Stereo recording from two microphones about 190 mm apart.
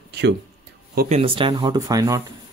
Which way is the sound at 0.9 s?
40° right (ahead or behind).